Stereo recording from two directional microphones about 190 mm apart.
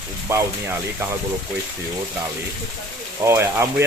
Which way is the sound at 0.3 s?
15° right (ahead or behind).